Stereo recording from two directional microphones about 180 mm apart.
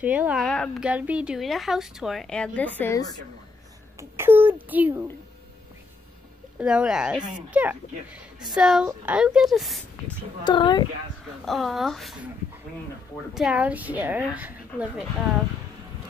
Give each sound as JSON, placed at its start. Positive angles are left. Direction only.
{"t": 0.0, "sound": "a woman's voice", "side_deg": -10}
{"t": 4.0, "sound": "speech", "side_deg": -10}
{"t": 6.6, "sound": "a woman's voice", "side_deg": -5}
{"t": 10.4, "sound": "a woman's voice", "side_deg": 25}
{"t": 11.4, "sound": "a woman's voice", "side_deg": 0}
{"t": 13.3, "sound": "speech", "side_deg": -5}